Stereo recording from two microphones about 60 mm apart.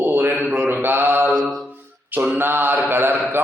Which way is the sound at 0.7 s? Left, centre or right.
Right.